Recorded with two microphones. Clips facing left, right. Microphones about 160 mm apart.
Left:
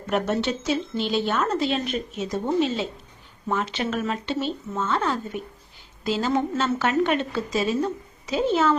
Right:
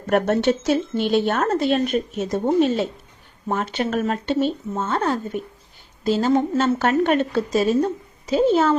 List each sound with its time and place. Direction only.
0.1 s a woman's voice: 55° right (ahead or behind)